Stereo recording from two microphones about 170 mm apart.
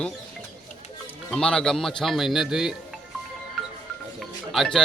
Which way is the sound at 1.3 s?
5° left (ahead or behind).